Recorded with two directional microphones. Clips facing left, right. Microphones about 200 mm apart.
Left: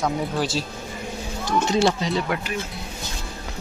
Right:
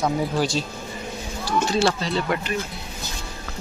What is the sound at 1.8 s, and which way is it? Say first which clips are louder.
Speech: left 1 dB; 15° left (ahead or behind).